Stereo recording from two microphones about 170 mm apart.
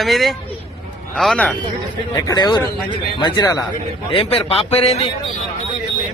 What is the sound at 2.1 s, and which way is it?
A man's voice, 25° left (ahead or behind).